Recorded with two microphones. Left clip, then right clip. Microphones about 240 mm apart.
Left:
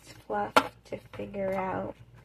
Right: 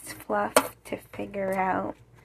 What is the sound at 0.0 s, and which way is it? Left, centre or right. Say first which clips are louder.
Chopping: right 4 dB; centre.